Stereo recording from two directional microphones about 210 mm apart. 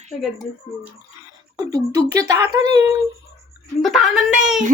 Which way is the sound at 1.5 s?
20° right (ahead or behind).